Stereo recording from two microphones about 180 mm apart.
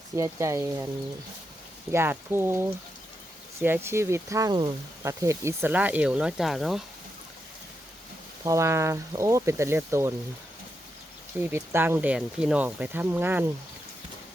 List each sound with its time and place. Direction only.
0.2 s speech: 15° right (ahead or behind)
1.9 s speech: 15° right (ahead or behind)
8.4 s speech: 15° right (ahead or behind)
11.3 s speech: 10° right (ahead or behind)